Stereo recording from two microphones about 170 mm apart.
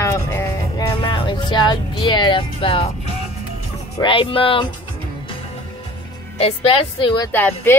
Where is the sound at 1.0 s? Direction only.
30° left (ahead or behind).